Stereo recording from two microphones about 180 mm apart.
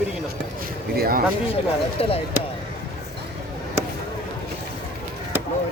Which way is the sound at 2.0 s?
35° left (ahead or behind).